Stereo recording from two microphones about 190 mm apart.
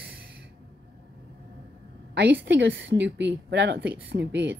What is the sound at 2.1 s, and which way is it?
A woman's voice, 65° right (ahead or behind).